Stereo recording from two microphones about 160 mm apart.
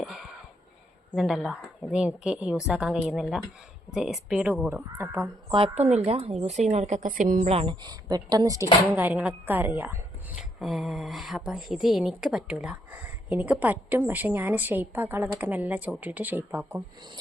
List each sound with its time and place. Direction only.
0.0 s a sound: centre (ahead or behind)
1.1 s a woman's voice: centre (ahead or behind)
5.5 s a woman's voice: 30° right (ahead or behind); by 7.5 s 55° right (ahead or behind)
7.5 s a woman's voice: 30° right (ahead or behind); by 16.8 s 15° right (ahead or behind)